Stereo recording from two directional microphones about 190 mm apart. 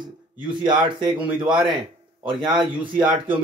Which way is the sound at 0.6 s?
25° right (ahead or behind).